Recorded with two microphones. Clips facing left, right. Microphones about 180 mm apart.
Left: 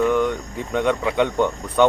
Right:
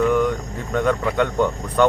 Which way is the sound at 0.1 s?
5° right (ahead or behind).